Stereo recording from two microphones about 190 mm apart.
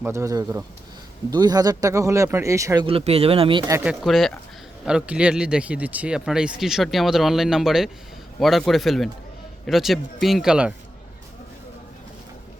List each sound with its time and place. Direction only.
0.0 s speech: 15° right (ahead or behind)
2.8 s speech: 30° right (ahead or behind)
3.8 s speech: centre (ahead or behind)